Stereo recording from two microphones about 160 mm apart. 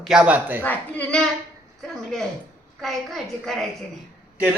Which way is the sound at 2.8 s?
Centre (ahead or behind).